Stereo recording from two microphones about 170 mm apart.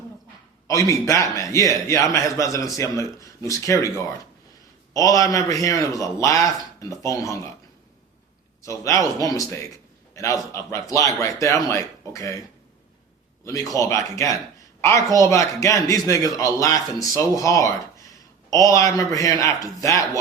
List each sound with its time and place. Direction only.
0.7 s a man's voice: 20° left (ahead or behind)
8.6 s a man's voice: 20° left (ahead or behind)
13.7 s a man's voice: 15° left (ahead or behind)